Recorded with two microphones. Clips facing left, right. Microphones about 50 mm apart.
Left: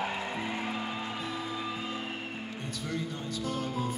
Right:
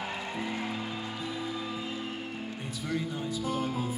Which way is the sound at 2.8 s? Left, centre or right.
Centre.